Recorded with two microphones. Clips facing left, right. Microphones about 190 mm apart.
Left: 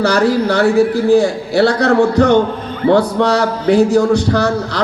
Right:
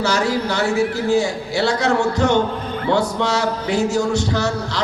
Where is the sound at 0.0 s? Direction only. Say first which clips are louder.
Left 7 dB; 55° left (ahead or behind).